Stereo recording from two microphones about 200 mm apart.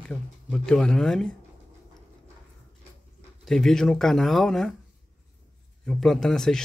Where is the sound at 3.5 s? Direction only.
Centre (ahead or behind).